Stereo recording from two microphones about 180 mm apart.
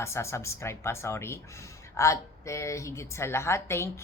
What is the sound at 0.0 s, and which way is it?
A woman's voice, 15° left (ahead or behind).